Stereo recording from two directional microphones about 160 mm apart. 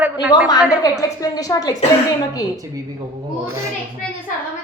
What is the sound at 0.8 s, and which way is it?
Speech, 20° left (ahead or behind).